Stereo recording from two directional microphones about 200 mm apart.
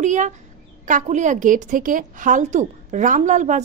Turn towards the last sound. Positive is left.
turn(degrees=-35)  # may be behind; listen again after turning